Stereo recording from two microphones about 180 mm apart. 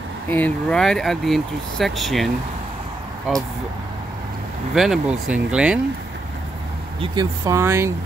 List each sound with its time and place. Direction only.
0.3 s speech: 5° left (ahead or behind)
4.7 s speech: centre (ahead or behind)
7.0 s speech: 20° right (ahead or behind)